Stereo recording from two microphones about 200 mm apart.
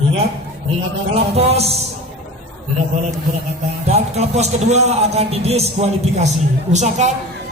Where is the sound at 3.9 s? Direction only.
35° right (ahead or behind).